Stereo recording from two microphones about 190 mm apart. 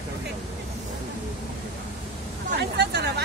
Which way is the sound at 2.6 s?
60° right (ahead or behind).